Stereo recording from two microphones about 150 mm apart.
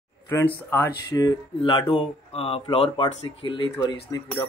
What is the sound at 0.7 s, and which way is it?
Speech, 20° left (ahead or behind).